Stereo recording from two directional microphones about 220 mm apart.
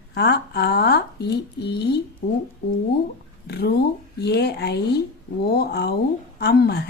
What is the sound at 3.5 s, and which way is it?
Speech, 45° left (ahead or behind).